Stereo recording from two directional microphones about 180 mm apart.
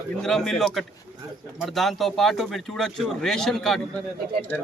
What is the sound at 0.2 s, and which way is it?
A man's voice, 5° left (ahead or behind).